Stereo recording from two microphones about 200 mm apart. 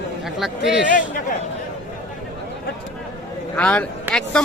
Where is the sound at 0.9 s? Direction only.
40° left (ahead or behind).